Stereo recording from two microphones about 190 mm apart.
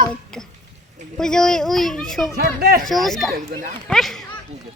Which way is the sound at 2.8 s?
Centre (ahead or behind).